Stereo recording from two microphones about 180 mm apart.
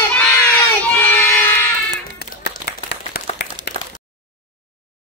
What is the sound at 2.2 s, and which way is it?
Clapping, 65° left (ahead or behind).